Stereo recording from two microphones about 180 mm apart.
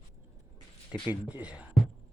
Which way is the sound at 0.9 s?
5° right (ahead or behind).